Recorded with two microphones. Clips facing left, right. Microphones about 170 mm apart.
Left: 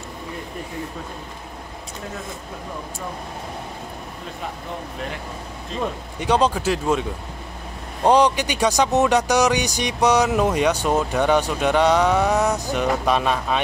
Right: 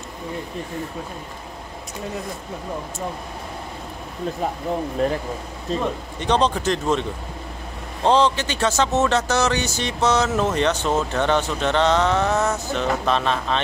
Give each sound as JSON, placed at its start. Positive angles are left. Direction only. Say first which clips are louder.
{"t": 5.0, "sound": "speech", "louder": "right 11 dB", "side_deg": -40}
{"t": 6.1, "sound": "speech", "louder": "left 1 dB", "side_deg": 10}